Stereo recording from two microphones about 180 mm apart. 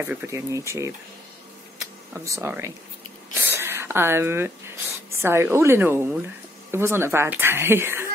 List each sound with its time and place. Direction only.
0.0 s speech: 10° right (ahead or behind)
2.2 s speech: 15° right (ahead or behind)
3.4 s a sound: 15° right (ahead or behind)
5.2 s speech: 15° right (ahead or behind)